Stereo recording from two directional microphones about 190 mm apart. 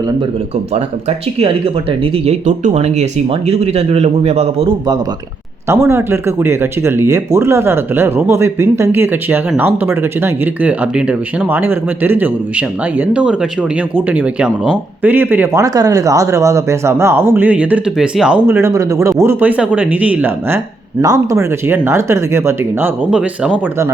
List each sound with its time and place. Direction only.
0.7 s speech: 35° right (ahead or behind)
5.6 s speech: 15° right (ahead or behind)